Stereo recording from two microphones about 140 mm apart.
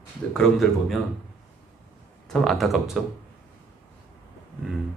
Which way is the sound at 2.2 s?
5° left (ahead or behind).